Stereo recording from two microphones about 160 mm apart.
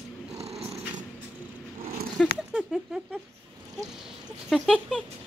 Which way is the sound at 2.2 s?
5° left (ahead or behind).